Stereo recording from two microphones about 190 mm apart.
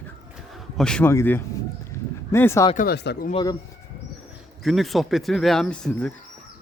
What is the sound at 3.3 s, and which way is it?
Speech, 25° left (ahead or behind).